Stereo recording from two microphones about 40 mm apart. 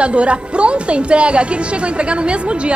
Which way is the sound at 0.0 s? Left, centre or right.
Right.